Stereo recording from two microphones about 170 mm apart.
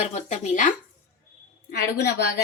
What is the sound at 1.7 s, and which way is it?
Speech, 75° left (ahead or behind).